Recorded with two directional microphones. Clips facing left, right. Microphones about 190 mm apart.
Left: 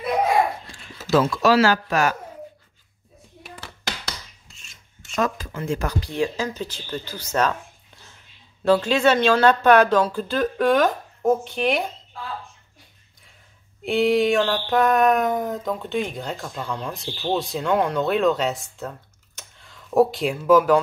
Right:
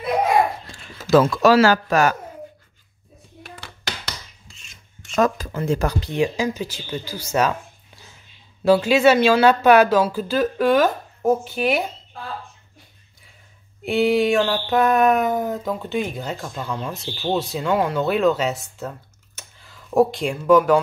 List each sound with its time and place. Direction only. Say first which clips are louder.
1.1 s speech: right 3 dB; 50° right (ahead or behind)
3.4 s hands: even; centre (ahead or behind)
5.1 s speech: right 5 dB; 40° right (ahead or behind); by 11.9 s 5° right (ahead or behind)
13.8 s a sound: right 1 dB; centre (ahead or behind)